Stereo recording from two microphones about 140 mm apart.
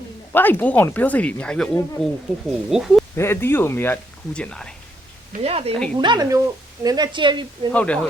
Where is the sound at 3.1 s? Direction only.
15° left (ahead or behind).